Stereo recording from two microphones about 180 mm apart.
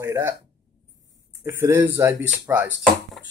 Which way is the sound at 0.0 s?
15° right (ahead or behind).